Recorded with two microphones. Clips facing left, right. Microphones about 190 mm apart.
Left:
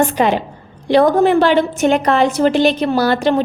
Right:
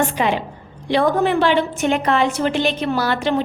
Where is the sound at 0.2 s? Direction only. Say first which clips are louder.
Left 4 dB; 40° left (ahead or behind).